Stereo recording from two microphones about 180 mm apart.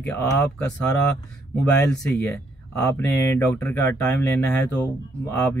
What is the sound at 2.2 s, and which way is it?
Speech, 10° left (ahead or behind).